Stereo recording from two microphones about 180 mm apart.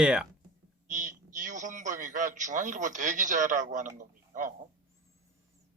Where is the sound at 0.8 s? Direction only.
45° right (ahead or behind).